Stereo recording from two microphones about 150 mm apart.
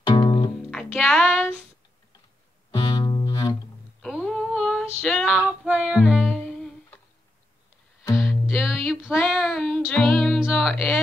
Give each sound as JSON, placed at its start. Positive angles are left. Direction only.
{"t": 0.0, "sound": "music", "side_deg": 30}
{"t": 0.9, "sound": "music", "side_deg": 0}
{"t": 2.7, "sound": "music", "side_deg": 30}
{"t": 4.0, "sound": "female singing", "side_deg": 5}
{"t": 5.7, "sound": "music", "side_deg": -10}
{"t": 5.9, "sound": "humming", "side_deg": 0}
{"t": 8.1, "sound": "music", "side_deg": 15}
{"t": 9.0, "sound": "female singing", "side_deg": 0}
{"t": 9.8, "sound": "music", "side_deg": 5}